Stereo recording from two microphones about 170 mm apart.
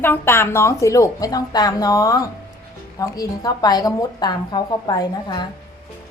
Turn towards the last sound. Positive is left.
turn(degrees=25)  # may be behind; listen again after turning